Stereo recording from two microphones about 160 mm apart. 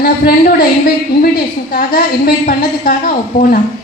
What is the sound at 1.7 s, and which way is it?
Speech, 65° left (ahead or behind).